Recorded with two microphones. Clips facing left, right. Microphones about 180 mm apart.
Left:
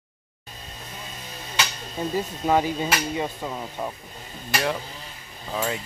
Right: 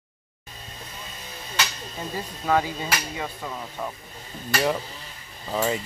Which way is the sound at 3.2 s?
20° left (ahead or behind).